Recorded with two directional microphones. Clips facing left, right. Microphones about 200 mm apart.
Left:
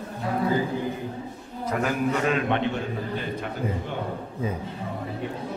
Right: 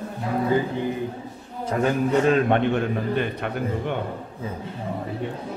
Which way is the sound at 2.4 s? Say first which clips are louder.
Right 5 dB; 55° right (ahead or behind).